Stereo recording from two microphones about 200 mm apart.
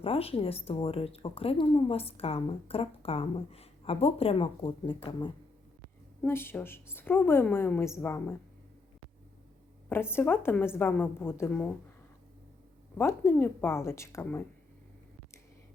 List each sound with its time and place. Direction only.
0.0 s speech: 30° left (ahead or behind)
6.2 s a woman's voice: 10° left (ahead or behind)
9.9 s a woman's voice: 10° left (ahead or behind)
13.0 s a woman's voice: 15° left (ahead or behind)